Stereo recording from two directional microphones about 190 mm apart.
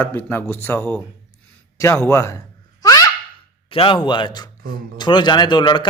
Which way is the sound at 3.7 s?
25° left (ahead or behind).